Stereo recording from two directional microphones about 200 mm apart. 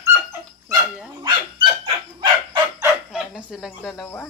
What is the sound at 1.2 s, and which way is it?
Dog, 25° right (ahead or behind).